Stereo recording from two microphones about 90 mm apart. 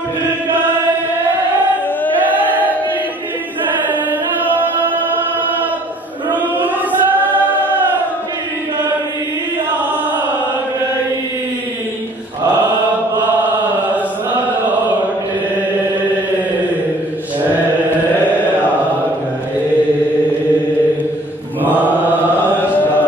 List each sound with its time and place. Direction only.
4.5 s chant: 20° right (ahead or behind)
6.3 s chant: 20° right (ahead or behind)
21.6 s mantra: 20° left (ahead or behind)
22.6 s chant: 20° left (ahead or behind)